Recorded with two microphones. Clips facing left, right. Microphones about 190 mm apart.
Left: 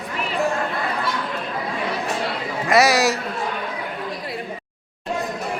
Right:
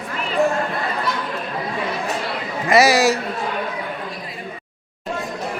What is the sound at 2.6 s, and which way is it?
Speech, centre (ahead or behind).